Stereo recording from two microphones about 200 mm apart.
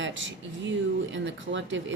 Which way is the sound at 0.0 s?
65° right (ahead or behind).